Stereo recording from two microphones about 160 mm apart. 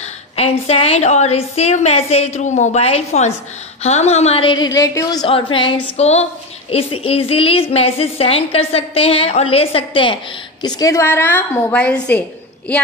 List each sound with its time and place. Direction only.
0.4 s a woman's voice: 40° left (ahead or behind)
10.6 s a woman's voice: 25° left (ahead or behind); by 12.2 s 10° left (ahead or behind)